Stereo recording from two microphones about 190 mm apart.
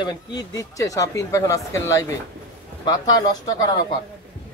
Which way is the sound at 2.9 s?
20° left (ahead or behind).